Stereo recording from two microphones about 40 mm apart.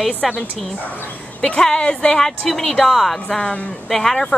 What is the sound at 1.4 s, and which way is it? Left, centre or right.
Speech, centre.